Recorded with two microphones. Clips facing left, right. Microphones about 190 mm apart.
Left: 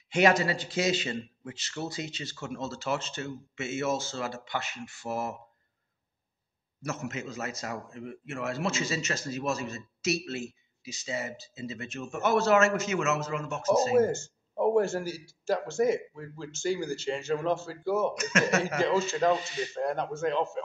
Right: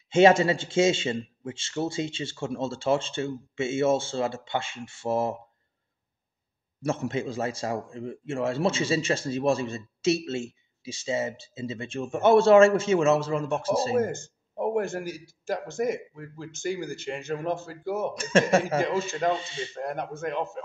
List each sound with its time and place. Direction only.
0.1 s speech: 25° right (ahead or behind)
6.8 s speech: 30° right (ahead or behind)
14.1 s speech: 55° right (ahead or behind)
15.0 s a man's voice: 15° right (ahead or behind)
15.4 s speech: 50° right (ahead or behind)
18.1 s speech: 30° right (ahead or behind)
18.8 s speech: 50° right (ahead or behind)
19.1 s speech: 30° right (ahead or behind)
20.0 s a man's voice: 55° right (ahead or behind)